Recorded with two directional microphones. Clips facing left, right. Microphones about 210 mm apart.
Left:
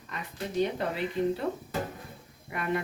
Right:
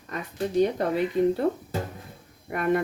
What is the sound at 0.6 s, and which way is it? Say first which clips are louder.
Speech: right 5 dB; 45° right (ahead or behind).